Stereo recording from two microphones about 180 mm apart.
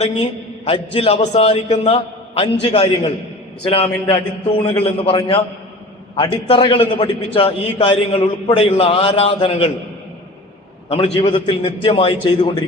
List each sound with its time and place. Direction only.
0.0 s a man's voice: 35° left (ahead or behind)
10.8 s a man's voice: 30° left (ahead or behind)